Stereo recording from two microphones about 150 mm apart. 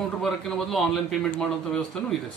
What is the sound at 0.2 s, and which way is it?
A man's voice, centre (ahead or behind).